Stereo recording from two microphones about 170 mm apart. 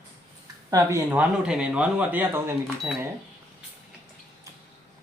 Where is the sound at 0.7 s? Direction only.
20° right (ahead or behind).